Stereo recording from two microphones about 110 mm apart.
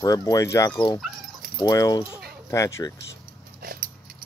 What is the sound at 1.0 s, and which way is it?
Dog, centre (ahead or behind).